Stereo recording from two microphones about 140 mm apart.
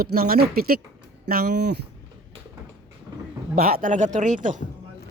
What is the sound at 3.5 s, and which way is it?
Speech, 90° right.